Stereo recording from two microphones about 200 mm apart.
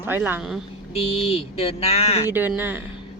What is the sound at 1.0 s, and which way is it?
Speech, 30° left (ahead or behind).